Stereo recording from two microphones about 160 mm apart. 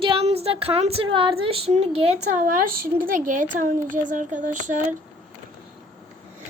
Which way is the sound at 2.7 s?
65° right (ahead or behind).